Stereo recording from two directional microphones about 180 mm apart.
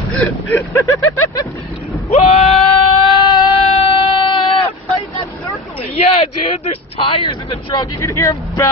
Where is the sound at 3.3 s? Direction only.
25° left (ahead or behind).